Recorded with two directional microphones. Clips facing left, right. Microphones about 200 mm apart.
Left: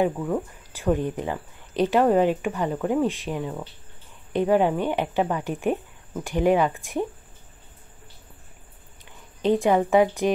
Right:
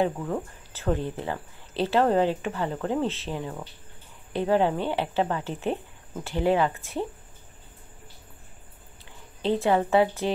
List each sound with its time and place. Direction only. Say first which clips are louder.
0.0 s speech: left 3 dB; 10° left (ahead or behind)
9.4 s speech: left 3 dB; 15° left (ahead or behind)